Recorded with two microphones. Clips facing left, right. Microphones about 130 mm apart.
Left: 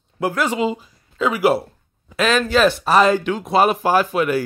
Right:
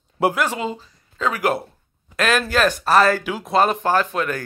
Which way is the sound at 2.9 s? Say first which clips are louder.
Left 1 dB; 15° left (ahead or behind).